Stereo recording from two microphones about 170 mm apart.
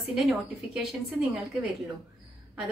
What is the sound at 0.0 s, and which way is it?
A woman's voice, centre (ahead or behind).